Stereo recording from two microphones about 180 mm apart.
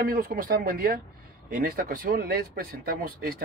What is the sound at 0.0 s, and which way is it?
Speech, 55° right (ahead or behind).